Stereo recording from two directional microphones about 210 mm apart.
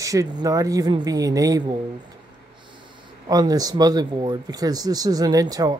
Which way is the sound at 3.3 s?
15° right (ahead or behind).